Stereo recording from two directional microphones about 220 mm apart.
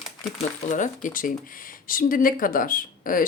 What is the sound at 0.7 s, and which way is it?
Speech, 35° left (ahead or behind).